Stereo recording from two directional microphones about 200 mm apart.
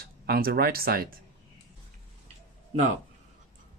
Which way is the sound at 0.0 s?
50° right (ahead or behind).